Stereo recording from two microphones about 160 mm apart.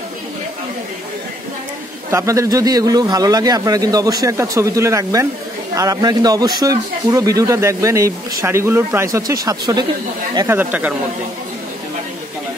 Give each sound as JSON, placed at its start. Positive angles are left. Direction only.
{"t": 2.0, "sound": "a man's voice", "side_deg": -20}